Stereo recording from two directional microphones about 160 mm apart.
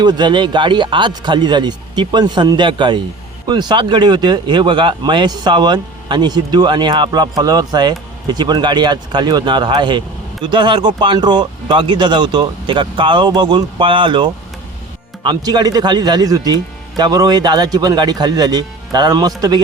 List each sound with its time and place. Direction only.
0.0 s speech: 25° right (ahead or behind)